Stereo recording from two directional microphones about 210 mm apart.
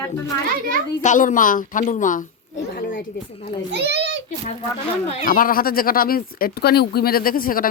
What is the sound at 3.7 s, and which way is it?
Speech, 55° right (ahead or behind).